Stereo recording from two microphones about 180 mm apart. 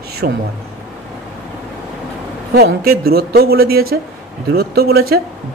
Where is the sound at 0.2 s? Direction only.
70° right (ahead or behind).